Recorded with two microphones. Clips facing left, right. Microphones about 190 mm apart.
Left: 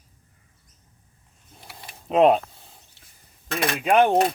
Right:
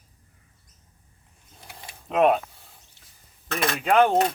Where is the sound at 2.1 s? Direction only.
25° left (ahead or behind).